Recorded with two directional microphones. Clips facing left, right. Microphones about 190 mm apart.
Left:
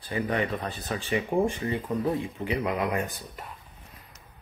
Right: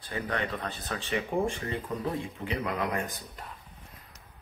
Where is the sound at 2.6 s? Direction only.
15° left (ahead or behind).